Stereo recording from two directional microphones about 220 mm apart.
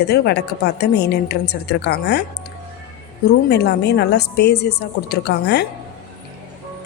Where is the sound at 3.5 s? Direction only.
50° left (ahead or behind).